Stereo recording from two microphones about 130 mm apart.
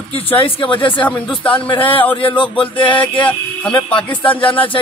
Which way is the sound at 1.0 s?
10° left (ahead or behind).